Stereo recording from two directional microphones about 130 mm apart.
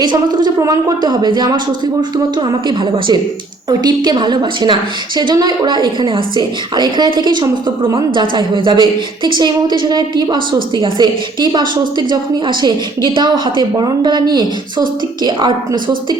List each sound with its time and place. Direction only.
0.0 s a woman's voice: 35° right (ahead or behind)